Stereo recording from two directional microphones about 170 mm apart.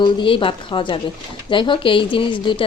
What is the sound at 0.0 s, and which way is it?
Speech, 30° left (ahead or behind).